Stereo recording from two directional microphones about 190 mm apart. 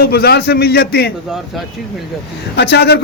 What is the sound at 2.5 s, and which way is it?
Speech, 60° left (ahead or behind).